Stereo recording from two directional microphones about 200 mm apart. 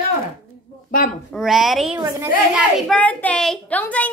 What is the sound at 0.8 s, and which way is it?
Speech, 45° left (ahead or behind).